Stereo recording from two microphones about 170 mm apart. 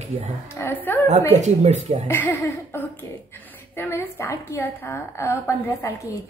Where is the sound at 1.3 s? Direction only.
40° right (ahead or behind).